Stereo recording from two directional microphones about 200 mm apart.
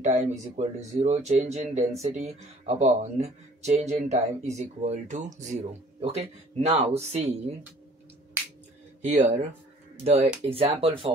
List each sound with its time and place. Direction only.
0.0 s speech: 35° right (ahead or behind)
9.0 s speech: 35° right (ahead or behind)